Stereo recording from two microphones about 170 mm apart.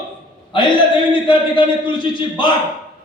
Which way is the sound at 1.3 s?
25° left (ahead or behind).